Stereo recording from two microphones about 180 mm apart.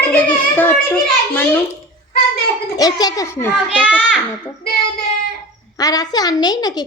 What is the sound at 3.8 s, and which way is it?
Speech, 5° right (ahead or behind).